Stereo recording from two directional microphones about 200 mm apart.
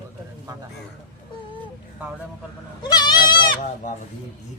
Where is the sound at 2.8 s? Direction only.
20° left (ahead or behind).